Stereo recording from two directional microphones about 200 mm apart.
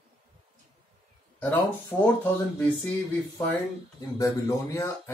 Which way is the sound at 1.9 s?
10° left (ahead or behind).